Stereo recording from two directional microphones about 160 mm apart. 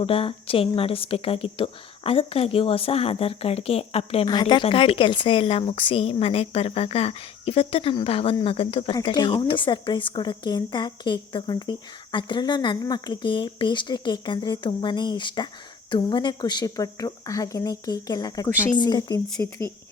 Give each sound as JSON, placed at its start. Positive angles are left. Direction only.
{"t": 0.0, "sound": "a woman's voice", "side_deg": 35}
{"t": 4.3, "sound": "a woman's voice", "side_deg": 25}